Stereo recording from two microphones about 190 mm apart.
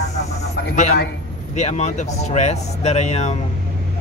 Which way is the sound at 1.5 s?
35° left (ahead or behind).